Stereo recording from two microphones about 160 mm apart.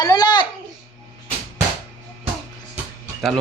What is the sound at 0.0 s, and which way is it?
Babbling, 25° left (ahead or behind).